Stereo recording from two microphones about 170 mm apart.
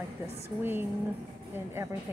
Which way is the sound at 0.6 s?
10° right (ahead or behind).